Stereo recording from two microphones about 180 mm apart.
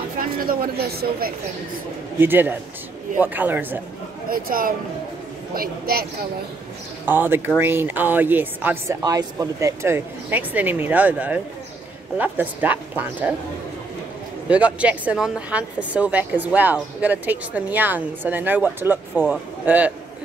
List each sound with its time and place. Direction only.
0.2 s speech: 55° right (ahead or behind)
2.1 s a woman's voice: 10° right (ahead or behind)
4.3 s speech: 55° right (ahead or behind)
7.1 s a woman's voice: 10° right (ahead or behind)
14.5 s a woman's voice: 5° right (ahead or behind)